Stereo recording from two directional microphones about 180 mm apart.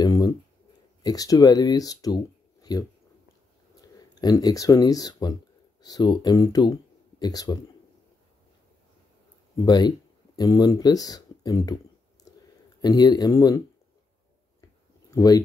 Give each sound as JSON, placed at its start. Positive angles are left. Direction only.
{"t": 0.0, "sound": "speech", "side_deg": 20}
{"t": 4.1, "sound": "speech", "side_deg": 20}
{"t": 9.6, "sound": "speech", "side_deg": 25}
{"t": 12.8, "sound": "speech", "side_deg": 20}
{"t": 15.0, "sound": "speech", "side_deg": 20}